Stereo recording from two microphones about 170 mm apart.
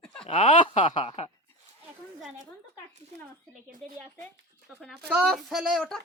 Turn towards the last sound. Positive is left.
turn(degrees=0)  # may be behind; listen again after turning